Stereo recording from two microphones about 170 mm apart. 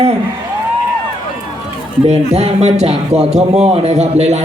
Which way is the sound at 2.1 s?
40° right (ahead or behind).